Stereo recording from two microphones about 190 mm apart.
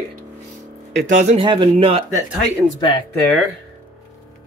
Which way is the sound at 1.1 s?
40° right (ahead or behind).